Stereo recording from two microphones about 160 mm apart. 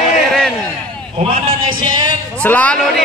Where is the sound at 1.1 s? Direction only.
35° right (ahead or behind).